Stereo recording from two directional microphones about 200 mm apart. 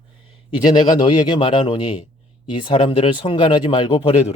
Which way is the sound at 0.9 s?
20° left (ahead or behind).